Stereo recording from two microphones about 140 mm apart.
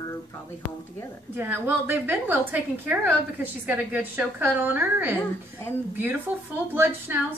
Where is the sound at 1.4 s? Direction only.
15° right (ahead or behind).